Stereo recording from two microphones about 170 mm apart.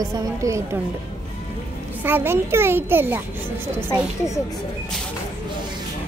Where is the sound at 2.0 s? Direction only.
15° right (ahead or behind).